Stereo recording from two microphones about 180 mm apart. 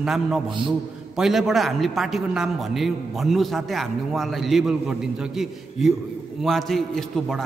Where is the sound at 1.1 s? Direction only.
Centre (ahead or behind).